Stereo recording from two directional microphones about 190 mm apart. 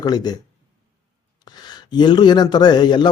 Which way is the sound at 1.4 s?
20° left (ahead or behind).